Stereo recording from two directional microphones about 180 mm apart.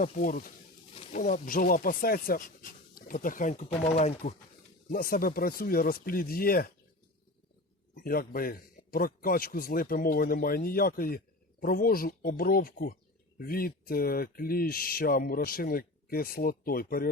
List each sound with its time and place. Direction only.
0.0 s speech: 50° left (ahead or behind)
4.9 s speech: 55° left (ahead or behind)
8.0 s speech: 55° left (ahead or behind)